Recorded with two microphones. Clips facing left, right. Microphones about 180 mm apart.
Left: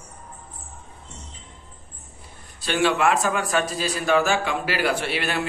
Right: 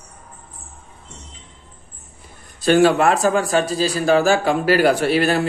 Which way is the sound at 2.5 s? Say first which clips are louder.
Right 8 dB; 45° right (ahead or behind).